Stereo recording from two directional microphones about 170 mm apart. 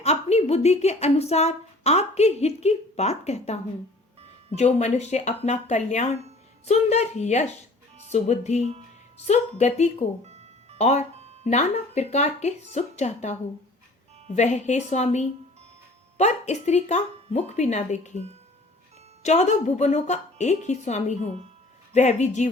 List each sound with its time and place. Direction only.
0.0 s a woman's voice: 40° left (ahead or behind)
10.2 s music: 40° right (ahead or behind)
10.8 s a woman's voice: 40° left (ahead or behind)
19.2 s a woman's voice: 40° left (ahead or behind)